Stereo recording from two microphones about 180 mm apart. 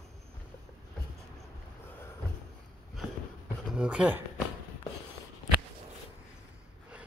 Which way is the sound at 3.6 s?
5° right (ahead or behind).